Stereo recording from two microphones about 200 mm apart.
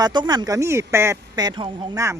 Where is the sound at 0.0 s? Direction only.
20° right (ahead or behind).